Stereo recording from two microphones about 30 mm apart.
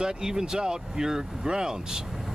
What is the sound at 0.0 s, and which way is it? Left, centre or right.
Speech, right.